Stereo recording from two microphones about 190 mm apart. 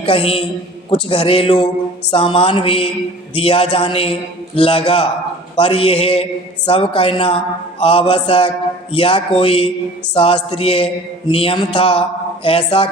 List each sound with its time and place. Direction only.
0.0 s a man's voice: 30° left (ahead or behind)